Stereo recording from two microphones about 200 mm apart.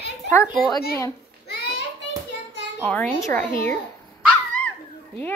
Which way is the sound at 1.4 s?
55° left (ahead or behind).